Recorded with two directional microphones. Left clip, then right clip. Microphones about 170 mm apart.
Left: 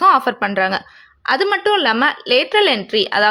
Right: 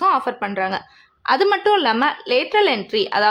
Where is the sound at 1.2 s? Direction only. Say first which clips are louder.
Even; centre (ahead or behind).